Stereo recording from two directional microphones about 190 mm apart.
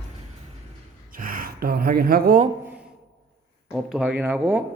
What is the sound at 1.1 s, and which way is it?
Speech, 50° right (ahead or behind).